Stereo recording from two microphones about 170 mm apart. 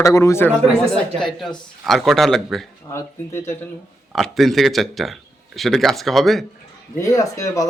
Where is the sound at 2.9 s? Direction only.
15° left (ahead or behind).